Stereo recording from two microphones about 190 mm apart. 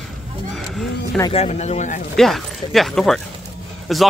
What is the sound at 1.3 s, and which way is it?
Speech, 35° left (ahead or behind).